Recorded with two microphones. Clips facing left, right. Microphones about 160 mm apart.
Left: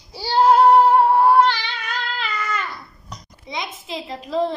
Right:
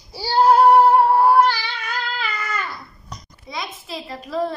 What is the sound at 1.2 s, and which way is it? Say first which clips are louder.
Speech: even; 5° right (ahead or behind).